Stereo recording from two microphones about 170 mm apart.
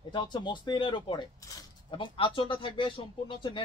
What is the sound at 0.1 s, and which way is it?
Speech, 25° left (ahead or behind).